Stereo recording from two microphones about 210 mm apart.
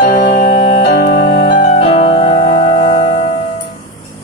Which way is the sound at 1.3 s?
25° left (ahead or behind).